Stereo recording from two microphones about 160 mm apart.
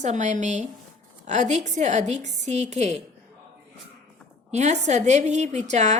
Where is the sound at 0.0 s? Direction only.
45° right (ahead or behind).